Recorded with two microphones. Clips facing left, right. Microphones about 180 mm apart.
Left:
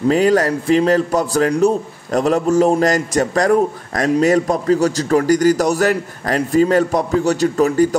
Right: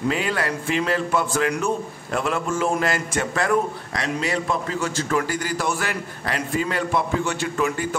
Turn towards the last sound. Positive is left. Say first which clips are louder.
# left 9 dB
turn(degrees=40)  # may be behind; listen again after turning